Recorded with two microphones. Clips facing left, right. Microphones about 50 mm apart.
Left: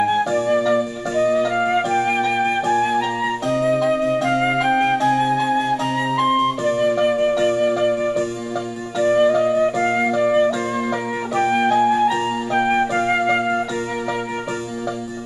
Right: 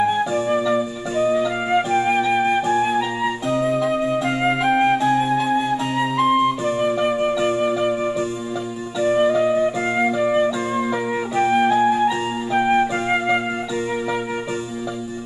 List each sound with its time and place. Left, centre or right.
0.2 s music: right
2.7 s flute: centre
9.1 s music: centre
9.8 s flute: centre
11.3 s music: centre
11.7 s music: centre